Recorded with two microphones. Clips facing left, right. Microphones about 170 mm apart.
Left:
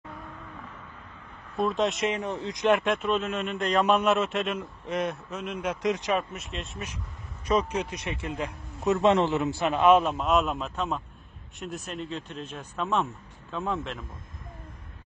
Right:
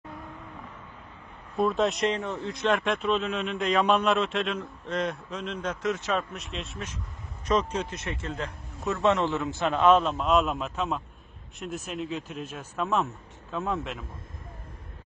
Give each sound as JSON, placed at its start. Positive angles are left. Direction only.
{"t": 1.6, "sound": "a man's voice", "side_deg": 0}
{"t": 2.1, "sound": "a man's voice", "side_deg": 15}
{"t": 2.8, "sound": "a man's voice", "side_deg": 0}
{"t": 6.3, "sound": "a man's voice", "side_deg": 0}
{"t": 7.4, "sound": "a man's voice", "side_deg": 10}
{"t": 9.6, "sound": "a man's voice", "side_deg": 5}